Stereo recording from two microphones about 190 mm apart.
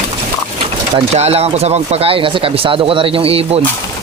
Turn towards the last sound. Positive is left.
turn(degrees=-30)  # may be behind; listen again after turning